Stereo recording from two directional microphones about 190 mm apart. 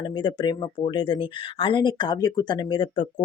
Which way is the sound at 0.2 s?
25° left (ahead or behind).